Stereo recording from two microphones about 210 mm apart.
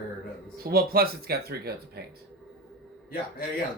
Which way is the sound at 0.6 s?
45° right (ahead or behind).